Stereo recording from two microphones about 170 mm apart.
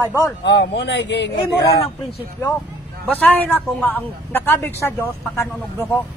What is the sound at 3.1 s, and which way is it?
Speech, 10° left (ahead or behind).